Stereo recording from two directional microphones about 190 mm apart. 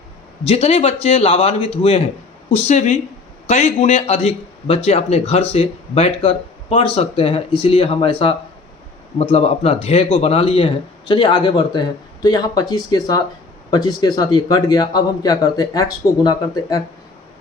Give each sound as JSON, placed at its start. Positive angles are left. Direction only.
{"t": 0.4, "sound": "a man's voice", "side_deg": 30}